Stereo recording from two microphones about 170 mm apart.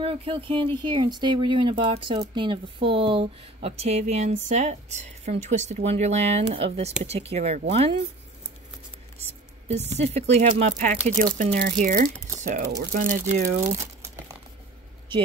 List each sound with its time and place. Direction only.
0.0 s speech: 35° right (ahead or behind)
9.7 s speech: 40° right (ahead or behind)